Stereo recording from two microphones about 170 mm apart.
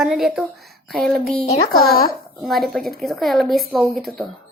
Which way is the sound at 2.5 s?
Centre (ahead or behind).